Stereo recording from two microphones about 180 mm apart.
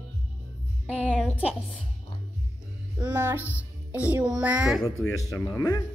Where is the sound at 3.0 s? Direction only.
10° right (ahead or behind).